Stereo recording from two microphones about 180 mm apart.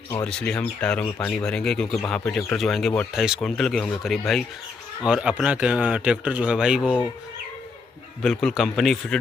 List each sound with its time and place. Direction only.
0.2 s a man's voice: 5° left (ahead or behind)
8.2 s a man's voice: 5° left (ahead or behind)